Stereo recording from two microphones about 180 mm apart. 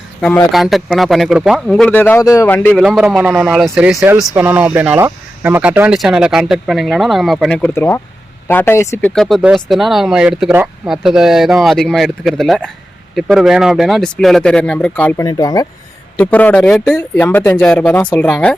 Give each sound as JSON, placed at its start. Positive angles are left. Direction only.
{"t": 0.5, "sound": "speech", "side_deg": 0}
{"t": 2.8, "sound": "speech", "side_deg": 0}
{"t": 15.3, "sound": "speech", "side_deg": 20}
{"t": 16.1, "sound": "speech", "side_deg": 10}